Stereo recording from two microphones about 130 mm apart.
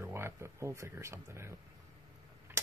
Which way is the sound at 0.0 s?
20° right (ahead or behind).